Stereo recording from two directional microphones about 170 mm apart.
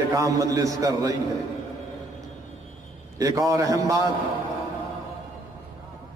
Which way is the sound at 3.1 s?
20° right (ahead or behind).